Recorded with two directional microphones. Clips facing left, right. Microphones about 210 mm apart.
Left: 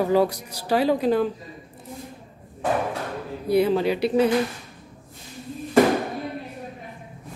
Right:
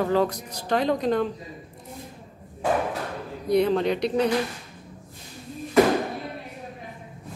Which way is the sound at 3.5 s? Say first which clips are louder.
Left 1 dB; 5° left (ahead or behind).